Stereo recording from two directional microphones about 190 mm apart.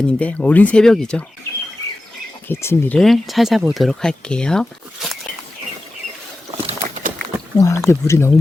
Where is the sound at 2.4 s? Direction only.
10° left (ahead or behind).